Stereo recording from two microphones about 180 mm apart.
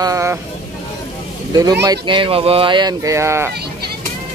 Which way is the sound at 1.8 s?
25° right (ahead or behind).